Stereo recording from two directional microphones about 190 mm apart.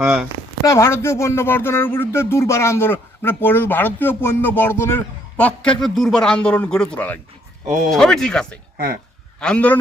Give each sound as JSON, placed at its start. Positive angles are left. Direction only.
{"t": 0.0, "sound": "speech", "side_deg": -5}
{"t": 0.6, "sound": "speech", "side_deg": 15}